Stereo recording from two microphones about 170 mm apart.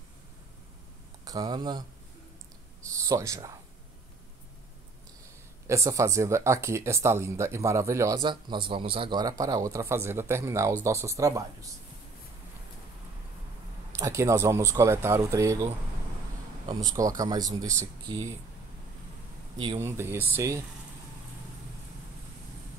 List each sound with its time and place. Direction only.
1.2 s speech: 20° right (ahead or behind)
2.9 s speech: 20° right (ahead or behind)
5.7 s speech: 15° right (ahead or behind)
13.9 s speech: 20° right (ahead or behind)
19.8 s speech: 15° right (ahead or behind)